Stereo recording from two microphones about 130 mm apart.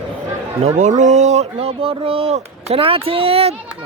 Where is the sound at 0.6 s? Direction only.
65° right (ahead or behind); by 3.5 s 50° right (ahead or behind).